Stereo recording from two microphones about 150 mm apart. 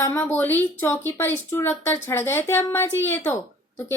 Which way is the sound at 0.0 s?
15° left (ahead or behind).